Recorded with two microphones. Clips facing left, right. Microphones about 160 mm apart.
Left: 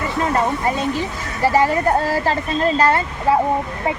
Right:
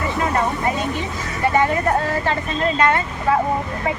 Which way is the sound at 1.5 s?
35° left (ahead or behind).